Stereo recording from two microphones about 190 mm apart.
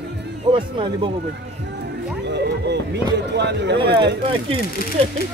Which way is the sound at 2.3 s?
65° right (ahead or behind).